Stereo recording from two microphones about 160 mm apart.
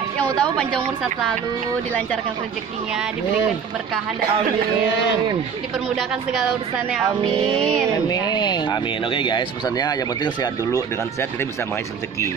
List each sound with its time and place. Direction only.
0.2 s a sound: 5° left (ahead or behind)
7.2 s music: 5° left (ahead or behind)
8.1 s speech: 25° left (ahead or behind)